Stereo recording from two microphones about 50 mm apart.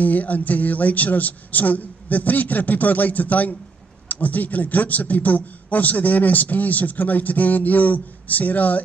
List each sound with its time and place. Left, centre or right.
0.0 s speech: left